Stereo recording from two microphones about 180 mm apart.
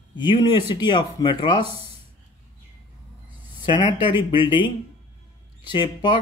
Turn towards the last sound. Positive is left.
turn(degrees=25)  # may be behind; listen again after turning